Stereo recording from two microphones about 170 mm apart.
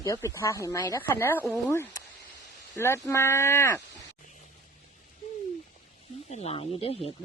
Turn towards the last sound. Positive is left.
turn(degrees=35)  # may be behind; listen again after turning